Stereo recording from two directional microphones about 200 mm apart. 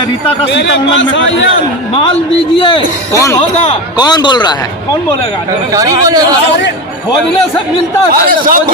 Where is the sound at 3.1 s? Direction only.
15° left (ahead or behind).